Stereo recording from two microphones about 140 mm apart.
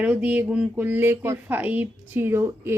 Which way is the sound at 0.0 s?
10° right (ahead or behind).